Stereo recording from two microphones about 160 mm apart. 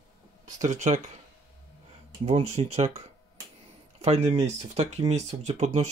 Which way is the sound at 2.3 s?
45° right (ahead or behind).